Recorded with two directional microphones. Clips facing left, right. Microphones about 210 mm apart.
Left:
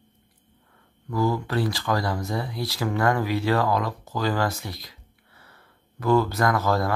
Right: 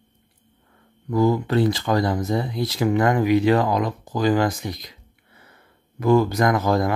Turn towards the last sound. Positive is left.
turn(degrees=-15)  # may be behind; listen again after turning